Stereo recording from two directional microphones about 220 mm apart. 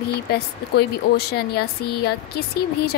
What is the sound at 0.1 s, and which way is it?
Speech, 45° left (ahead or behind).